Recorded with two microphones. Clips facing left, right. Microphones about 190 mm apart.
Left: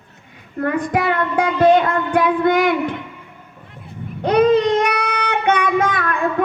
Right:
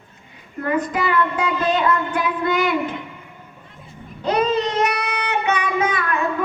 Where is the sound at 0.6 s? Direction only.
60° left (ahead or behind).